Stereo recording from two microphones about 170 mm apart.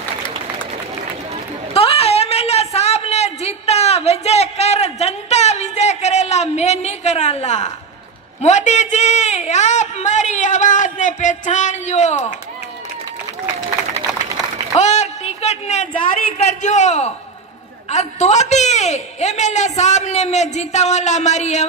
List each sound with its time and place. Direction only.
1.7 s a sound: 35° left (ahead or behind)
8.4 s a man's voice: 45° left (ahead or behind)
14.8 s a man's voice: 40° left (ahead or behind)